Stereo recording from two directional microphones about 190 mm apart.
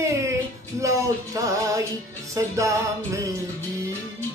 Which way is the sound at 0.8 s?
15° right (ahead or behind).